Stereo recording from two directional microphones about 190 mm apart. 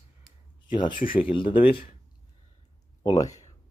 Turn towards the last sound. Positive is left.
turn(degrees=20)  # may be behind; listen again after turning